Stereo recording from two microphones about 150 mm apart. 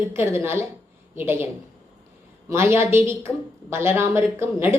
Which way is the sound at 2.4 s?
15° right (ahead or behind).